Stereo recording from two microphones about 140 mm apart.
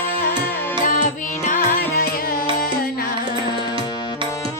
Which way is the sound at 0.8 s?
70° left (ahead or behind).